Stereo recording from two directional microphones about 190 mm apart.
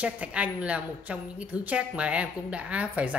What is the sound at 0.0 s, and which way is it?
A woman's voice, 5° right (ahead or behind).